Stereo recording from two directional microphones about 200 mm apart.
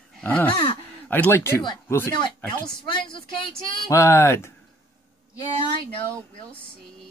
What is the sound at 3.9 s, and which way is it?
Speech, 10° left (ahead or behind).